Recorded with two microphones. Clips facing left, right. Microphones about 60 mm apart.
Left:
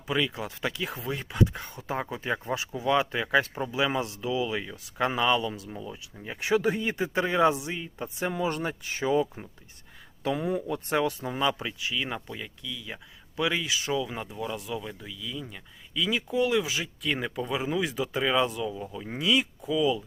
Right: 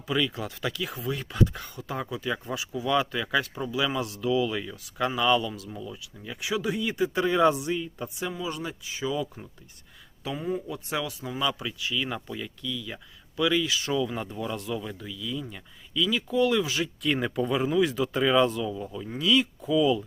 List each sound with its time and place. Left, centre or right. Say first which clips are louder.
0.1 s speech: right 1 dB; left
8.3 s speech: left 4 dB; left
10.3 s speech: left 1 dB; left
10.8 s speech: left 7 dB; left
11.3 s speech: right 1 dB; left
12.1 s speech: right 2 dB; centre
16.0 s speech: right 2 dB; left
19.2 s speech: right 2 dB; left
19.6 s speech: right 3 dB; centre